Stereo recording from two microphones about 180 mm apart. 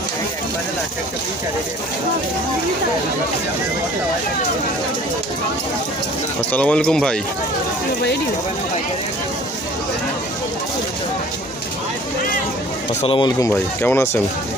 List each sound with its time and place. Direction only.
6.5 s speech: 5° left (ahead or behind)
13.0 s speech: 30° left (ahead or behind)
13.5 s speech: 10° left (ahead or behind)